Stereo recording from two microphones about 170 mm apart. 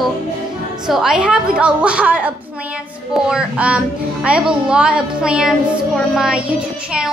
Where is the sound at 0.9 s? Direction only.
5° right (ahead or behind).